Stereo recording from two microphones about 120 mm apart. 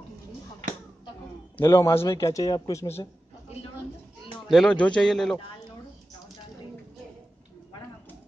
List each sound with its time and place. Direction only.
1.6 s a man's voice: 25° left (ahead or behind)
4.5 s a man's voice: 5° left (ahead or behind)